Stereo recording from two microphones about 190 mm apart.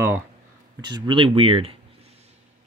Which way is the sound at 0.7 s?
20° right (ahead or behind).